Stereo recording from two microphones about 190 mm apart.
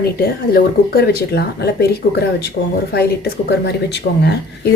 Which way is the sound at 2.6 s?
50° left (ahead or behind).